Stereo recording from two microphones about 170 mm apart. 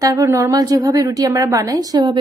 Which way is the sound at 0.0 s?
15° right (ahead or behind).